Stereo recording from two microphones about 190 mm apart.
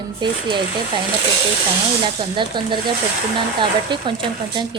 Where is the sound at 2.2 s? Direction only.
25° right (ahead or behind).